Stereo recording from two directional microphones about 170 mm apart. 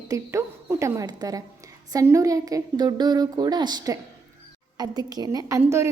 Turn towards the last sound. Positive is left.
turn(degrees=-15)  # may be behind; listen again after turning